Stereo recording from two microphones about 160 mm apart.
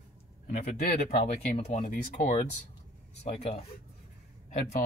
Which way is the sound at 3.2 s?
40° left (ahead or behind).